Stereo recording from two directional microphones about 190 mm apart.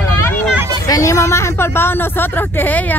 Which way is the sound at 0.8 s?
15° left (ahead or behind).